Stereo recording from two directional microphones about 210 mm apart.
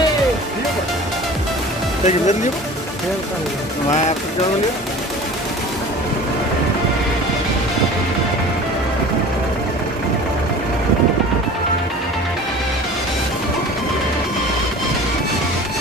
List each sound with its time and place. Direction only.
2.0 s speech: 35° left (ahead or behind)